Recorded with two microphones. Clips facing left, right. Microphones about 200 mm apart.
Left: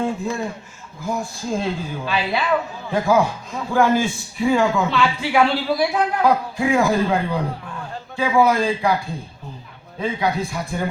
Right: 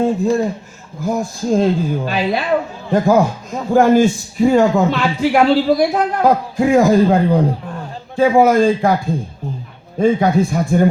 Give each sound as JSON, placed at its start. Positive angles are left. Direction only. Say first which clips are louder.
{"t": 0.0, "sound": "speech", "louder": "right 8 dB", "side_deg": -40}
{"t": 10.0, "sound": "speech", "louder": "right 9 dB", "side_deg": -50}